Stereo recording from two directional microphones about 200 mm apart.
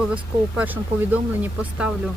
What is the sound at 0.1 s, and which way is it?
Speech, 5° right (ahead or behind).